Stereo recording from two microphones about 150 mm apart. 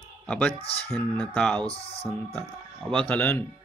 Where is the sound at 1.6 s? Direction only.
40° left (ahead or behind).